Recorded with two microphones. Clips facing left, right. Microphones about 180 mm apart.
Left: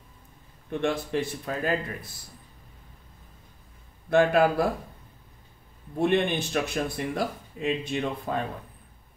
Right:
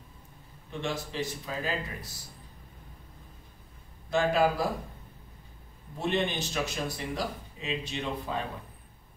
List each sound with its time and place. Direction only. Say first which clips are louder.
0.7 s a man's voice: left 7 dB; 55° left (ahead or behind)
4.1 s a man's voice: left 5 dB; 60° left (ahead or behind)
5.9 s a man's voice: left 6 dB; 55° left (ahead or behind)